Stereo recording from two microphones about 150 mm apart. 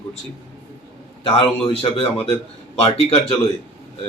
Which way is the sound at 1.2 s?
35° left (ahead or behind).